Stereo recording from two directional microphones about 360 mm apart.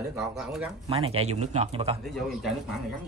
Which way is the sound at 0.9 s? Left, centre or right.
Centre.